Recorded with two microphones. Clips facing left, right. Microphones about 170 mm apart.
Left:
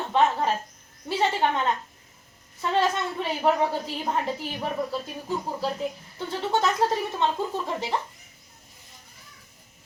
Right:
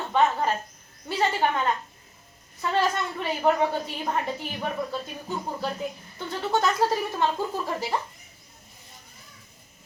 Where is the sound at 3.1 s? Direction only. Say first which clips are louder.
Right 1 dB; centre (ahead or behind).